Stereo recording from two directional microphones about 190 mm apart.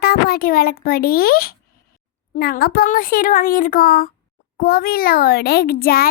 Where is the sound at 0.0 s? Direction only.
55° left (ahead or behind).